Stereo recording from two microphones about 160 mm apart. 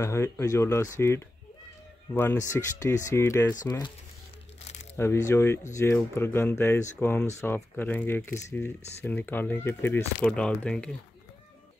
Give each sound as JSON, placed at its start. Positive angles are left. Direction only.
{"t": 0.0, "sound": "speech", "side_deg": 15}
{"t": 4.9, "sound": "speech", "side_deg": 15}